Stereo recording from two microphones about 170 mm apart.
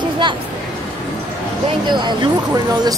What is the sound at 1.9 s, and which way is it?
Speech, 25° right (ahead or behind).